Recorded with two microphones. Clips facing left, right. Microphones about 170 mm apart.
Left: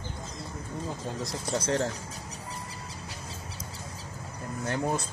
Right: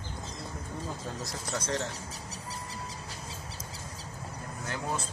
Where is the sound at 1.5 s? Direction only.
35° left (ahead or behind).